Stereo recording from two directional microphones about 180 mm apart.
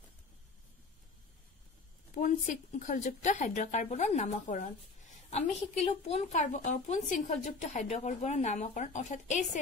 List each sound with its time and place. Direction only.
2.1 s a woman's voice: 45° left (ahead or behind)